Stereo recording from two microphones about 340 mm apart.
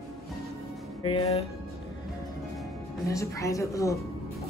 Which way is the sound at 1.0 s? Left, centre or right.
Centre.